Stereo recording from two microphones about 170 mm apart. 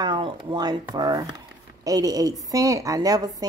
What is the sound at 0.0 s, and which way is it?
Speech, 25° right (ahead or behind).